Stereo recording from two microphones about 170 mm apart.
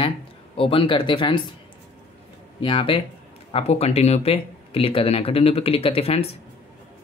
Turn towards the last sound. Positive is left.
turn(degrees=35)  # may be behind; listen again after turning